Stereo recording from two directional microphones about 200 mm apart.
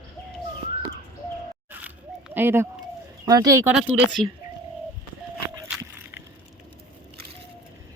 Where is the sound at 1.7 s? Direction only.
10° right (ahead or behind).